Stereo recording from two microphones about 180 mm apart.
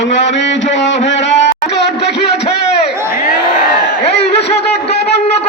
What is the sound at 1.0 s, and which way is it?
Music, 80° left.